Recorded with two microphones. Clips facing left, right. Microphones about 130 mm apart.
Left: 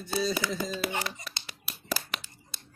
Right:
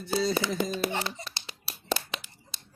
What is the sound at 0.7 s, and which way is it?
Music, 25° right (ahead or behind).